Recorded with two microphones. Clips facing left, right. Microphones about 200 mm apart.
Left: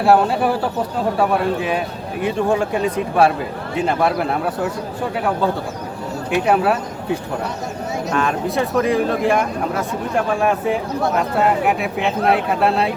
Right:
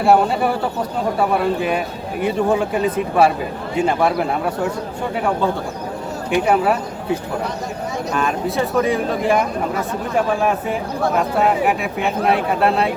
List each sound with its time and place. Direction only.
0.0 s speech: centre (ahead or behind)
6.3 s speech: centre (ahead or behind)